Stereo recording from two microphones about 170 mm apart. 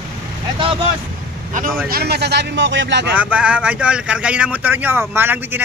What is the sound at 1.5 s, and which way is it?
Vehicle, 50° right (ahead or behind).